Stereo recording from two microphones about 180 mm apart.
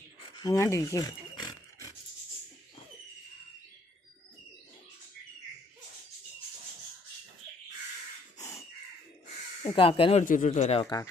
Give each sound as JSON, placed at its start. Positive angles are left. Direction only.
{"t": 0.2, "sound": "a sound", "side_deg": 20}
{"t": 9.6, "sound": "speech", "side_deg": 30}
{"t": 10.2, "sound": "speech", "side_deg": 45}